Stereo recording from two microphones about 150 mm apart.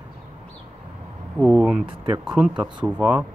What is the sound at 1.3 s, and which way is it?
Speech, 5° right (ahead or behind).